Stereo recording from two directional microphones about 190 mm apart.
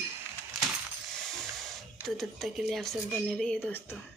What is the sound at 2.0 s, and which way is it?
Speech, centre (ahead or behind).